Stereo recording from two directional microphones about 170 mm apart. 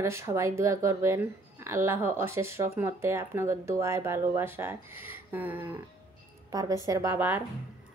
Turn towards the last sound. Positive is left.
turn(degrees=-10)  # may be behind; listen again after turning